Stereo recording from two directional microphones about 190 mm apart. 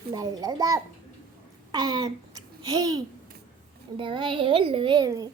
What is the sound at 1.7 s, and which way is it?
Babbling, 20° right (ahead or behind).